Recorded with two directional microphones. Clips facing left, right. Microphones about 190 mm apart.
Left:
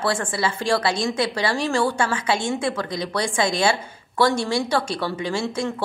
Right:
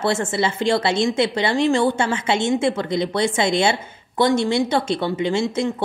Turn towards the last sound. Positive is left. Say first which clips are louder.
# right 4 dB
turn(degrees=-20)  # may be behind; listen again after turning